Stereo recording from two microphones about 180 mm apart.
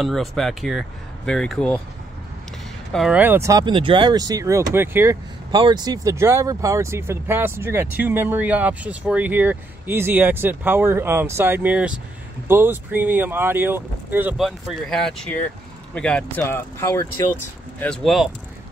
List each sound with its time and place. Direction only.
0.0 s speech: centre (ahead or behind)
2.9 s speech: 5° right (ahead or behind)
5.5 s speech: 25° right (ahead or behind); by 17.3 s 15° left (ahead or behind)
17.7 s speech: 5° left (ahead or behind)